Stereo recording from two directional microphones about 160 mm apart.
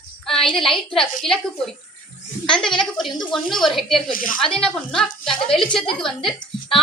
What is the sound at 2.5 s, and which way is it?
A woman's voice, 5° left (ahead or behind).